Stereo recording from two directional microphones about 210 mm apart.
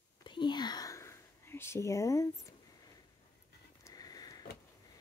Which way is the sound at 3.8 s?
15° left (ahead or behind).